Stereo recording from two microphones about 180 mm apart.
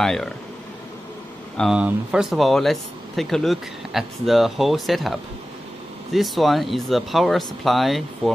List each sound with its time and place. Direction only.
0.0 s speech: 5° left (ahead or behind)
1.6 s speech: 5° right (ahead or behind)
6.1 s speech: centre (ahead or behind)